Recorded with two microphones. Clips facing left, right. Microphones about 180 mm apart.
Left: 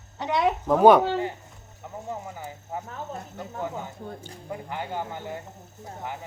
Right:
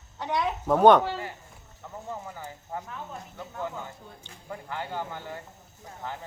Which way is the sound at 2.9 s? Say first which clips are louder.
Left 4 dB; 40° left (ahead or behind).